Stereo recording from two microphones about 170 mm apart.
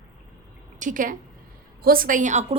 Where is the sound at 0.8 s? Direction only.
50° right (ahead or behind).